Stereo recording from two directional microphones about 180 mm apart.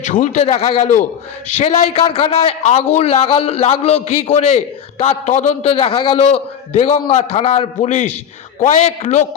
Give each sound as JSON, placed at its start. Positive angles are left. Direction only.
{"t": 0.0, "sound": "a man's voice", "side_deg": 45}